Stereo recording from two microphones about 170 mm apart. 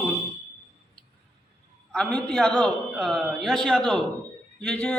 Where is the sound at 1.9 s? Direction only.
5° left (ahead or behind).